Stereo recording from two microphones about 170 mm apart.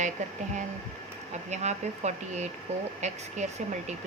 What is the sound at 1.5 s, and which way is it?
Speech, 45° right (ahead or behind).